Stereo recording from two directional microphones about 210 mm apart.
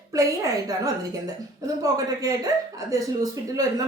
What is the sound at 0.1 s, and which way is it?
A woman's voice, 15° right (ahead or behind).